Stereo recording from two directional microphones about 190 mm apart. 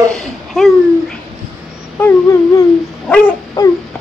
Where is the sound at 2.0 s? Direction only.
15° left (ahead or behind).